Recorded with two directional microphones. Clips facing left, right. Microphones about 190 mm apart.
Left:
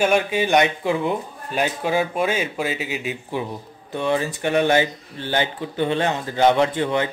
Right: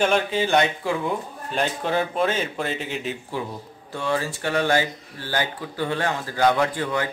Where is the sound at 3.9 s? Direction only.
20° left (ahead or behind).